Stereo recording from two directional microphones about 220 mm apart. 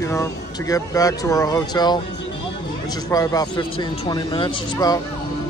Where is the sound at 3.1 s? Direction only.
15° left (ahead or behind).